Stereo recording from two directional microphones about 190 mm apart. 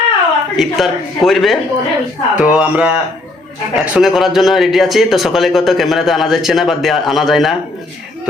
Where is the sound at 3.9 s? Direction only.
Centre (ahead or behind).